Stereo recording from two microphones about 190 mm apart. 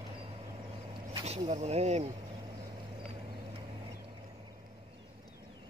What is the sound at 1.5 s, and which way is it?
Speech, 35° right (ahead or behind).